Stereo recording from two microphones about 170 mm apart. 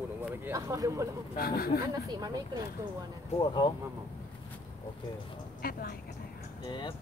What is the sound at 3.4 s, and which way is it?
Speech, 25° left (ahead or behind).